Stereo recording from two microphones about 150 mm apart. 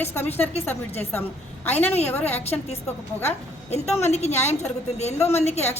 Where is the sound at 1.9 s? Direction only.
45° left (ahead or behind).